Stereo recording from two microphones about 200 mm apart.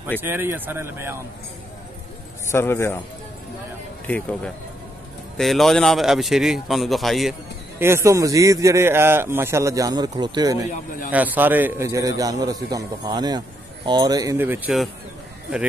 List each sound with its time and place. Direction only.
0.2 s a man's voice: 10° right (ahead or behind)
2.5 s a man's voice: 10° left (ahead or behind)
5.4 s a man's voice: centre (ahead or behind)
7.8 s a man's voice: 15° right (ahead or behind)